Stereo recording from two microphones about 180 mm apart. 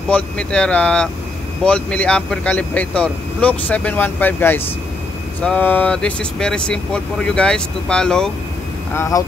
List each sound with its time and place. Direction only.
0.1 s speech: 5° left (ahead or behind)
8.9 s speech: 15° left (ahead or behind)